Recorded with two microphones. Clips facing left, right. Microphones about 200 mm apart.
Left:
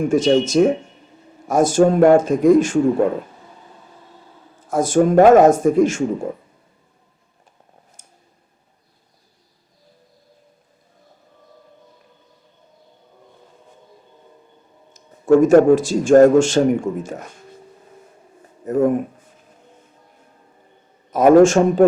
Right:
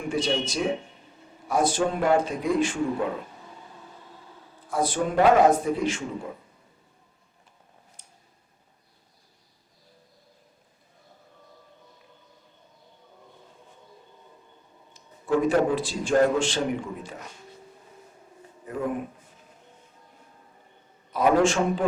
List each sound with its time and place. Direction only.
0.1 s a man's voice: 45° left (ahead or behind)
4.7 s a man's voice: 45° left (ahead or behind)
8.0 s a sound: 45° left (ahead or behind)
14.9 s a man's voice: 45° left (ahead or behind)
18.6 s a man's voice: 45° left (ahead or behind)
21.1 s a man's voice: 45° left (ahead or behind)